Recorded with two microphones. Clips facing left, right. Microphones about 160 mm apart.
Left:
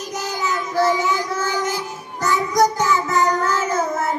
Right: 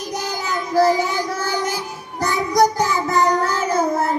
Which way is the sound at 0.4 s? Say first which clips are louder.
Right 3 dB; 35° right (ahead or behind).